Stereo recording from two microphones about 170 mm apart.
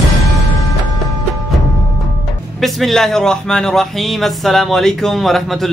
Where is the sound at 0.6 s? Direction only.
20° left (ahead or behind).